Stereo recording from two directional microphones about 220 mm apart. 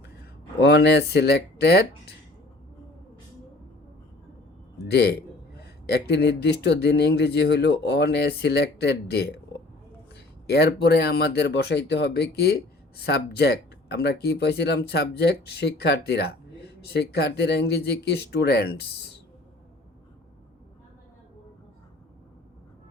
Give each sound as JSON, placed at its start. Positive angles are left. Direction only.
{"t": 0.6, "sound": "speech", "side_deg": 50}
{"t": 4.9, "sound": "speech", "side_deg": 50}
{"t": 10.4, "sound": "speech", "side_deg": 45}